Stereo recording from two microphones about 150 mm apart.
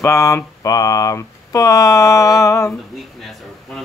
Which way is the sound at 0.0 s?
20° left (ahead or behind).